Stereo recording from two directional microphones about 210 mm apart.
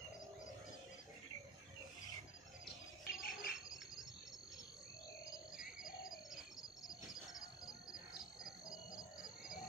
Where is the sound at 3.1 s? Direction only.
45° left (ahead or behind).